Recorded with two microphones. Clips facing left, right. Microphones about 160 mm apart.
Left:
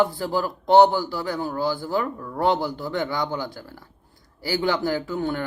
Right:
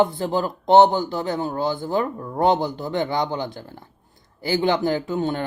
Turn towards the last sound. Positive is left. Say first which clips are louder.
# right 2 dB
turn(degrees=-20)  # may be behind; listen again after turning